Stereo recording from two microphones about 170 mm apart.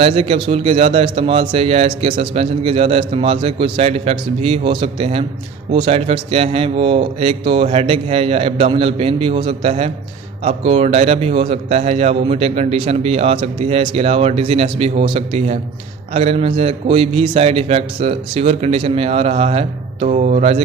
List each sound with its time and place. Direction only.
0.0 s a man's voice: 35° right (ahead or behind)